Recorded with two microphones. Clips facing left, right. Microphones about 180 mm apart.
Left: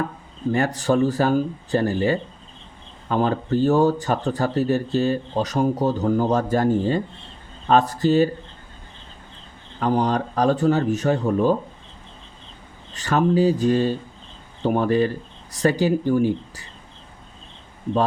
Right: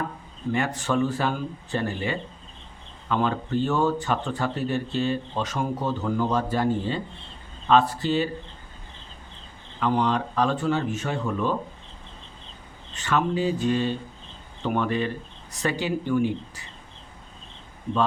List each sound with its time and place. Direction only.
0.5 s speech: 40° left (ahead or behind)
9.8 s speech: 40° left (ahead or behind)
12.9 s speech: 40° left (ahead or behind)